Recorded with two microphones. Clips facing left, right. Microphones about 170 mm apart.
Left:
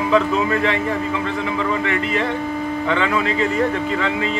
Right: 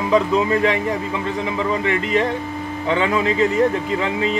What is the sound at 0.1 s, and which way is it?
Speech, 20° right (ahead or behind).